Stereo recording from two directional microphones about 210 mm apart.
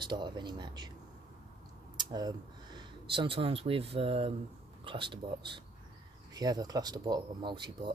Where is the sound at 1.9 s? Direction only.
20° right (ahead or behind).